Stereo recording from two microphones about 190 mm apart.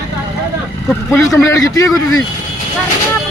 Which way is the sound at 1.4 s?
20° left (ahead or behind).